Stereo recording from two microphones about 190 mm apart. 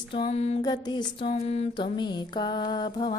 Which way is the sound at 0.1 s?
30° left (ahead or behind).